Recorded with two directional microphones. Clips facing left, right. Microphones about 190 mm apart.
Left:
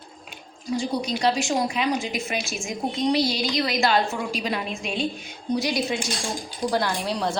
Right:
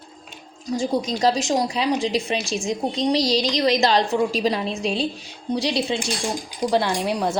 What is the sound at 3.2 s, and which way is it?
Speech, 90° right.